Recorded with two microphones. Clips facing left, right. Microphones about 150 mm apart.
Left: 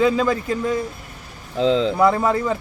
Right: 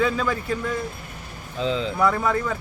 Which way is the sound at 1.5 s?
70° left (ahead or behind).